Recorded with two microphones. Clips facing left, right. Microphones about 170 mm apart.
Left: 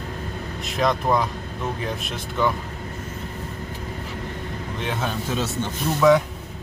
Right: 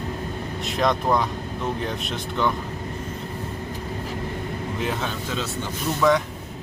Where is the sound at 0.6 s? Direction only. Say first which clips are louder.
Even; centre (ahead or behind).